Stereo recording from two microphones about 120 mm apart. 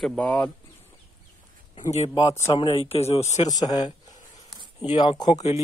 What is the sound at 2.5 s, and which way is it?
Speech, 50° left (ahead or behind).